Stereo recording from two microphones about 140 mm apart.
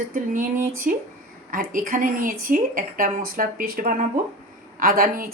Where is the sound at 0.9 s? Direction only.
70° right (ahead or behind).